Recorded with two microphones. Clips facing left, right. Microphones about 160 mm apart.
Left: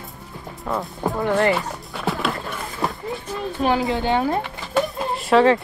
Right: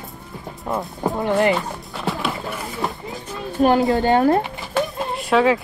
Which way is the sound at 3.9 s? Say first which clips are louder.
Right 5 dB; 45° right (ahead or behind).